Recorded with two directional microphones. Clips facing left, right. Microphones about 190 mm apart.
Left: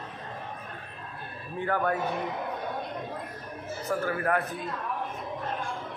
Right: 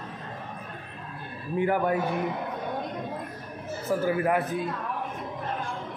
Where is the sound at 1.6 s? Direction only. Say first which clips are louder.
Right 3 dB; 15° right (ahead or behind).